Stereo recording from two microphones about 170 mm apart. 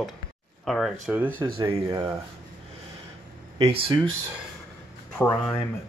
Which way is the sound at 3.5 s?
35° right (ahead or behind).